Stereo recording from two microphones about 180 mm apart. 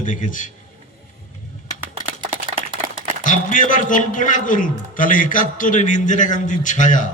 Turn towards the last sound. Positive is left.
turn(degrees=45)  # may be behind; listen again after turning